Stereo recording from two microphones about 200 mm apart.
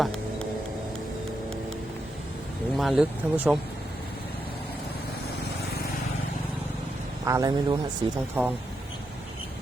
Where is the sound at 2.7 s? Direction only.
Centre (ahead or behind).